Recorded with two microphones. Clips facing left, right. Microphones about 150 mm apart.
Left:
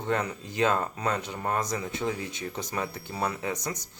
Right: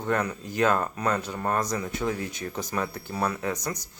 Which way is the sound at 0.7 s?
50° right (ahead or behind).